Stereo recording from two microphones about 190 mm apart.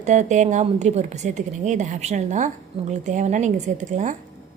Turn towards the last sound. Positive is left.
turn(degrees=-40)  # may be behind; listen again after turning